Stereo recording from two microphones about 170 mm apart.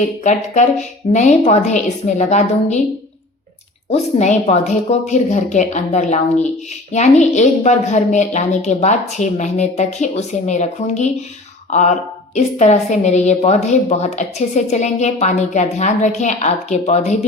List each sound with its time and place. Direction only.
0.3 s a woman's voice: 45° left (ahead or behind)
3.8 s a woman's voice: 40° left (ahead or behind)